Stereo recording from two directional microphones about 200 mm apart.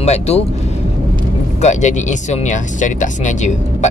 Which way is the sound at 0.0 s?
35° left (ahead or behind).